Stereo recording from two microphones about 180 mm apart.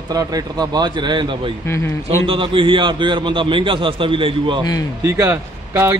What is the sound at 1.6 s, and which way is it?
Speech, 15° left (ahead or behind).